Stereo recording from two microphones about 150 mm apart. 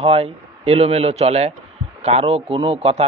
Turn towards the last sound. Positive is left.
turn(degrees=-40)  # may be behind; listen again after turning